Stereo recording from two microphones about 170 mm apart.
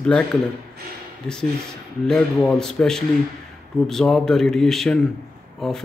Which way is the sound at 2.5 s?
5° left (ahead or behind).